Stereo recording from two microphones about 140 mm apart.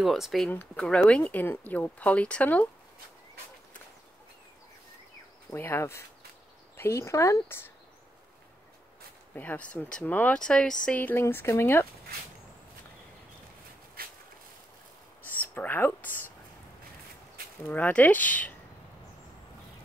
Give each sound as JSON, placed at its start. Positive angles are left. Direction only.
{"t": 0.0, "sound": "speech", "side_deg": 0}
{"t": 5.5, "sound": "speech", "side_deg": 15}
{"t": 9.3, "sound": "speech", "side_deg": 10}
{"t": 14.0, "sound": "a sound", "side_deg": -90}
{"t": 15.2, "sound": "speech", "side_deg": 15}
{"t": 17.6, "sound": "speech", "side_deg": 10}